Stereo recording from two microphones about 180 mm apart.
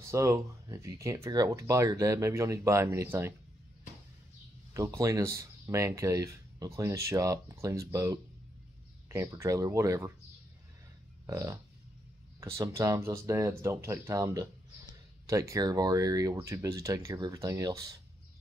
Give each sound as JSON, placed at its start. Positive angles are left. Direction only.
{"t": 0.0, "sound": "speech", "side_deg": -15}
{"t": 4.7, "sound": "speech", "side_deg": -15}
{"t": 11.2, "sound": "speech", "side_deg": -20}